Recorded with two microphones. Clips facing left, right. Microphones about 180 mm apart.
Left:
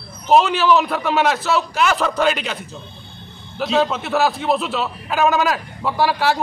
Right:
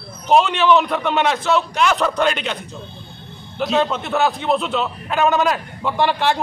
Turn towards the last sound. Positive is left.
turn(degrees=5)  # may be behind; listen again after turning